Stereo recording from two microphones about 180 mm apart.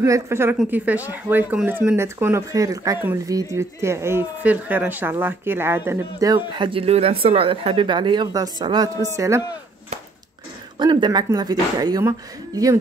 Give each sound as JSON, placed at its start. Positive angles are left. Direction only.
{"t": 0.0, "sound": "speech", "side_deg": -15}
{"t": 10.8, "sound": "speech", "side_deg": -25}